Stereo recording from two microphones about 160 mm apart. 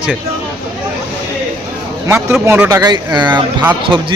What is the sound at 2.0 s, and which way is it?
Speech, 15° right (ahead or behind).